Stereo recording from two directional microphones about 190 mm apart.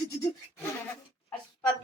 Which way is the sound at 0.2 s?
15° left (ahead or behind).